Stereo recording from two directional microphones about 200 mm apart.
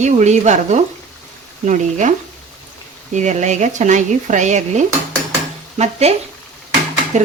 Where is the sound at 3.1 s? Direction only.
35° right (ahead or behind).